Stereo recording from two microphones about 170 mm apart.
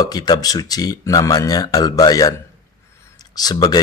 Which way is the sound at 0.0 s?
25° left (ahead or behind).